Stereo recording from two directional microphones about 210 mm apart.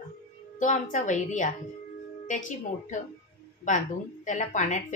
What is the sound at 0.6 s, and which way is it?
Speech, 35° left (ahead or behind).